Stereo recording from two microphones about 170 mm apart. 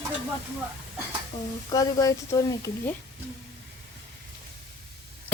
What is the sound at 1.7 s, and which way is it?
Speech, 20° left (ahead or behind).